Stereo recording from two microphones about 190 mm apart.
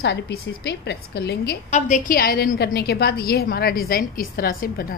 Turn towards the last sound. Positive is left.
turn(degrees=50)  # may be behind; listen again after turning